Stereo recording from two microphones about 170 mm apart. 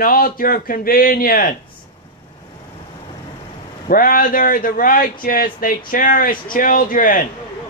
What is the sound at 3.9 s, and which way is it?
A man's voice, 55° left (ahead or behind).